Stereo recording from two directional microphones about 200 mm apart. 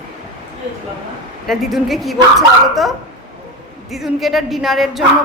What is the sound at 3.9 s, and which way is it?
A woman's voice, centre (ahead or behind).